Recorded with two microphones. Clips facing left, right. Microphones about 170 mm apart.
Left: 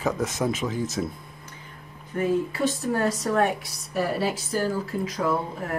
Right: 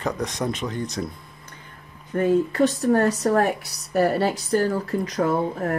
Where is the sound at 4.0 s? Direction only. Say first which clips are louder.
Right 5 dB; 65° right (ahead or behind).